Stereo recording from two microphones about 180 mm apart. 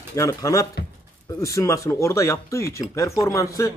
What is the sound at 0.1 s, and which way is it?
Speech, 15° left (ahead or behind).